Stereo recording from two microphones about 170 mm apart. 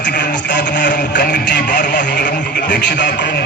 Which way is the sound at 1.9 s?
90° left.